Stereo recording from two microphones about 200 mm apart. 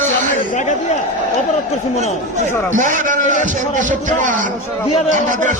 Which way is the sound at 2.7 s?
40° right (ahead or behind).